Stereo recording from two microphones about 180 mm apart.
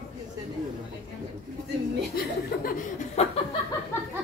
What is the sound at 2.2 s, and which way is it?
Speech, 55° left (ahead or behind).